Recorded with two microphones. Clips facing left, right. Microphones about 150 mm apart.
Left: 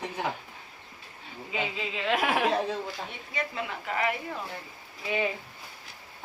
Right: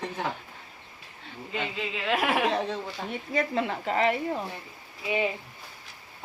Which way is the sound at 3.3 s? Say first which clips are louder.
Right 7 dB; 40° right (ahead or behind).